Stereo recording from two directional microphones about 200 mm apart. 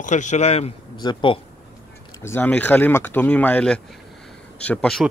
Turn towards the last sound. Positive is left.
turn(degrees=5)  # may be behind; listen again after turning